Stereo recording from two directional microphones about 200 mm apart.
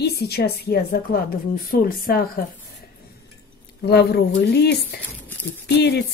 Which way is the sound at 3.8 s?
55° left (ahead or behind).